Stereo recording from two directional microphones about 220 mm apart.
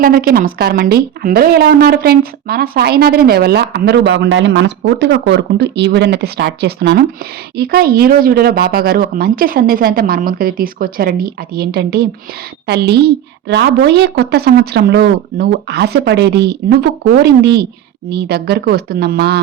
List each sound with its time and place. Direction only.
0.0 s speech: 40° right (ahead or behind)